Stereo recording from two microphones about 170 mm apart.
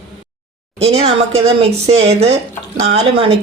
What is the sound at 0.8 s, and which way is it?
A woman's voice, 35° right (ahead or behind).